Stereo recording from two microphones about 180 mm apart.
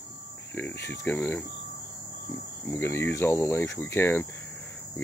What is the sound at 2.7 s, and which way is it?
Speech, 15° left (ahead or behind).